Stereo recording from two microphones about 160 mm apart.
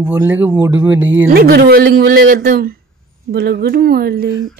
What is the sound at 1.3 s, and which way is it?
Speech, 75° right (ahead or behind).